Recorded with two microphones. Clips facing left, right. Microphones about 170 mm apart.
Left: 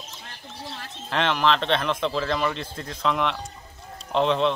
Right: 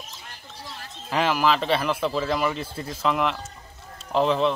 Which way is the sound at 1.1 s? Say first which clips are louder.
Right 1 dB; 5° right (ahead or behind).